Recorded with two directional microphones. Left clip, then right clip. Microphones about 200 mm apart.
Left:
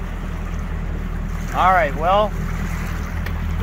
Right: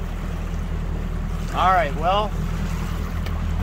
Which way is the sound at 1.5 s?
20° left (ahead or behind).